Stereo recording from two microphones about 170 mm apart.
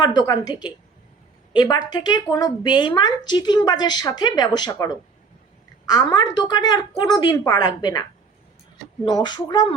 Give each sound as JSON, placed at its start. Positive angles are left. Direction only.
{"t": 0.0, "sound": "a woman's voice", "side_deg": 25}
{"t": 9.0, "sound": "a woman's voice", "side_deg": 25}